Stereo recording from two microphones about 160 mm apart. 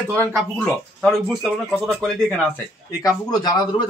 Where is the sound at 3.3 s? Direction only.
25° left (ahead or behind).